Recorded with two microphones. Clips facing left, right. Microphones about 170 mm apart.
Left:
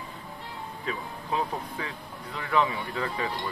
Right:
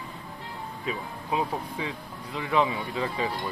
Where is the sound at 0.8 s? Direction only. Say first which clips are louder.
Right 1 dB; 10° right (ahead or behind).